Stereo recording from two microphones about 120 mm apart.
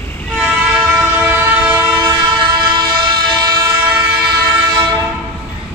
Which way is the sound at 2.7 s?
40° right (ahead or behind).